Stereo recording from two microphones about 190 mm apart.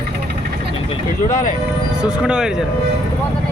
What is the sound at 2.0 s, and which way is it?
Speech, 5° right (ahead or behind).